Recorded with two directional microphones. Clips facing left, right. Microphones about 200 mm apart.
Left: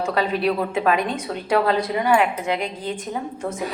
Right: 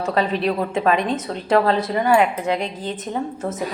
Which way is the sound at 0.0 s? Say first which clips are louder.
Right 1 dB; 5° left (ahead or behind).